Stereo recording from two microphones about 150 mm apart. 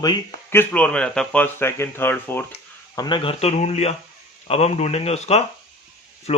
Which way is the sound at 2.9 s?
30° left (ahead or behind).